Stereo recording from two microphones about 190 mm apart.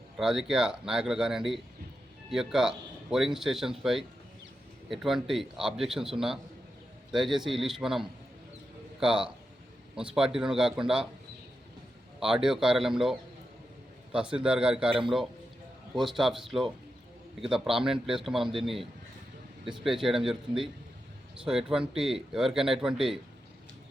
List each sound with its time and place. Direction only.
0.2 s a man's voice: centre (ahead or behind)
12.2 s a man's voice: 5° right (ahead or behind)
16.0 s a man's voice: centre (ahead or behind)